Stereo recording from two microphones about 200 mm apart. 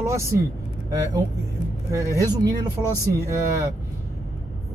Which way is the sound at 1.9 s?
15° right (ahead or behind).